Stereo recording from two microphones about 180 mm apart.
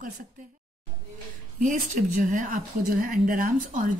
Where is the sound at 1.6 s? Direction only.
45° right (ahead or behind).